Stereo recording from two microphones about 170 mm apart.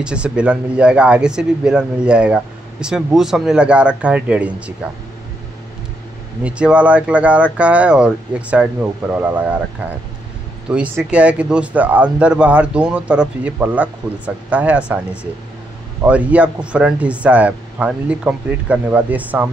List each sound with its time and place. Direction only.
0.0 s speech: 5° right (ahead or behind)
6.4 s speech: 5° right (ahead or behind)
16.0 s speech: 10° right (ahead or behind)